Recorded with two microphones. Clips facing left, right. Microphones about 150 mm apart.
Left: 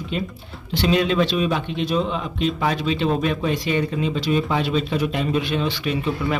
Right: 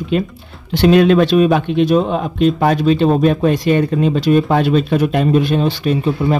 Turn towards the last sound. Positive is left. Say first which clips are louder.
# right 7 dB
turn(degrees=-40)  # may be behind; listen again after turning